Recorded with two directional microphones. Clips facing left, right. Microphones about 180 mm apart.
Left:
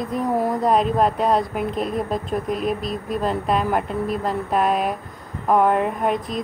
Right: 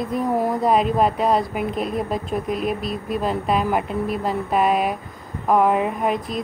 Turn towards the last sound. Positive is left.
turn(degrees=0)  # may be behind; listen again after turning